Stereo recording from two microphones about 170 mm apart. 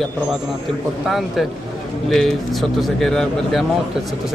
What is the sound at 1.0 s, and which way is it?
Speech, centre (ahead or behind).